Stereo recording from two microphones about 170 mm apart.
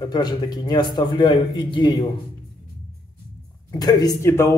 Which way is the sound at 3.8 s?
20° left (ahead or behind).